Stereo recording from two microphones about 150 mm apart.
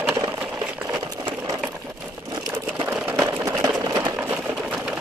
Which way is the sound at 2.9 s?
10° right (ahead or behind).